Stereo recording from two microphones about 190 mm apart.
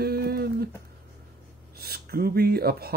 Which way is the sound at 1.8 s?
55° right (ahead or behind).